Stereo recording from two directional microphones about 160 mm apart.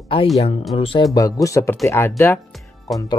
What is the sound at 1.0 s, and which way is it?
Speech, 20° left (ahead or behind).